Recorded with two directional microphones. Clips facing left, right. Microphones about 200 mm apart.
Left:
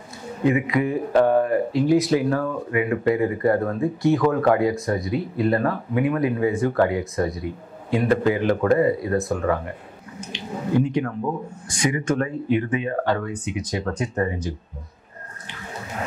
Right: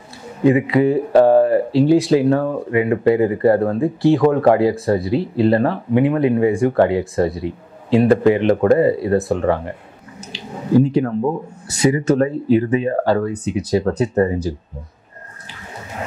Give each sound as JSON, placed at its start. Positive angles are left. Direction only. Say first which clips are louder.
{"t": 0.5, "sound": "speech", "louder": "right 7 dB", "side_deg": -30}
{"t": 10.3, "sound": "drip", "louder": "right 6 dB", "side_deg": -35}
{"t": 11.7, "sound": "speech", "louder": "right 7 dB", "side_deg": -40}